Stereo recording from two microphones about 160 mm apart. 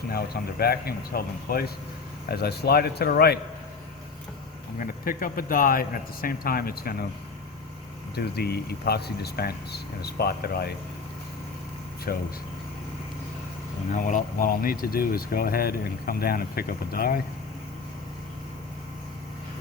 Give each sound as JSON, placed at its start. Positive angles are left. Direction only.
{"t": 0.6, "sound": "speech", "side_deg": 75}
{"t": 2.3, "sound": "speech", "side_deg": 85}
{"t": 4.8, "sound": "speech", "side_deg": 60}
{"t": 8.1, "sound": "speech", "side_deg": 85}
{"t": 12.1, "sound": "speech", "side_deg": 65}
{"t": 13.9, "sound": "speech", "side_deg": 55}